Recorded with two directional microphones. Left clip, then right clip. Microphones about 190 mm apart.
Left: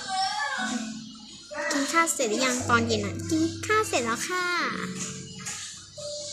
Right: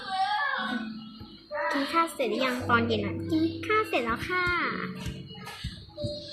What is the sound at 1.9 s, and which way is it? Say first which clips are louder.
A child's voice: left 4 dB; 25° left (ahead or behind).